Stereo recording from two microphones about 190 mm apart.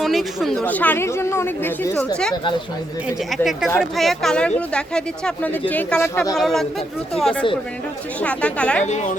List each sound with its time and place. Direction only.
0.0 s speech: centre (ahead or behind)
2.3 s speech: 25° left (ahead or behind)
3.1 s speech: centre (ahead or behind)
8.8 s a woman's voice: 40° left (ahead or behind)